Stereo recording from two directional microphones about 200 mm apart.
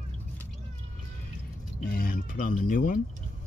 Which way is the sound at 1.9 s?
45° left (ahead or behind).